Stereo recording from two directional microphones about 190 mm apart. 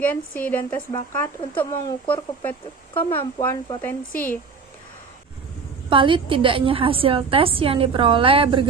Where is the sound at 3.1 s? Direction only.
10° left (ahead or behind).